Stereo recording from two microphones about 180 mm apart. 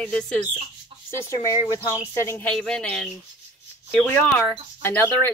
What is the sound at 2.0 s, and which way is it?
Speech, 10° left (ahead or behind).